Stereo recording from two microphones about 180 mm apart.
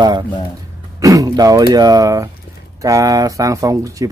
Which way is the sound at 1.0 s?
20° right (ahead or behind).